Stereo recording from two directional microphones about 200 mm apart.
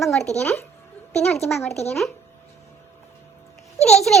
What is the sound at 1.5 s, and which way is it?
Speech, 15° left (ahead or behind).